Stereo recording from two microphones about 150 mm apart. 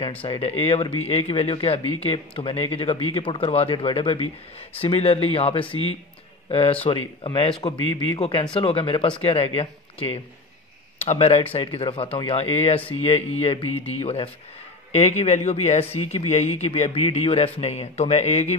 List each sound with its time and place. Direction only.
0.2 s speech: 40° left (ahead or behind)